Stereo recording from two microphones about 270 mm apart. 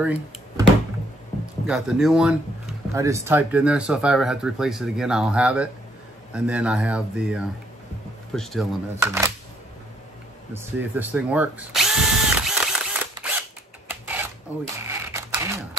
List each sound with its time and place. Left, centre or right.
0.0 s speech: centre
1.7 s speech: centre
8.9 s speech: centre
10.5 s drill: centre
13.8 s a sound: centre